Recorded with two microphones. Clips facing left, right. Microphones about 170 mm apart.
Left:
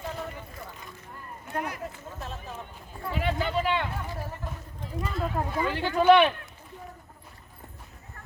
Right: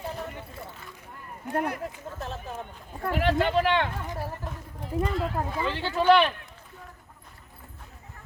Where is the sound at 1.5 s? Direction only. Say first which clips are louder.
Right 5 dB; 55° right (ahead or behind).